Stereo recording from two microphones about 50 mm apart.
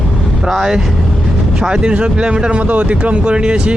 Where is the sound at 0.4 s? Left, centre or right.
Centre.